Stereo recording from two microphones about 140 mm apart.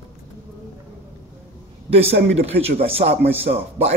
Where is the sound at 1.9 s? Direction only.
45° right (ahead or behind).